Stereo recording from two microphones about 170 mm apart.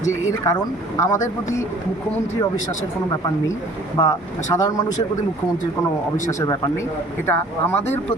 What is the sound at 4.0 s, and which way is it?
Speech, 25° left (ahead or behind).